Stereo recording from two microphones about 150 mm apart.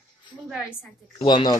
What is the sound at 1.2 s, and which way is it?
Speech, 30° left (ahead or behind).